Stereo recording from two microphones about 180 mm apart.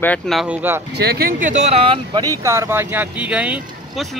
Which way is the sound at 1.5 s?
35° right (ahead or behind).